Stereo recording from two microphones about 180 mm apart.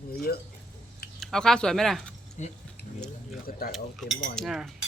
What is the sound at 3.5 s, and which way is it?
Speech, 55° left (ahead or behind).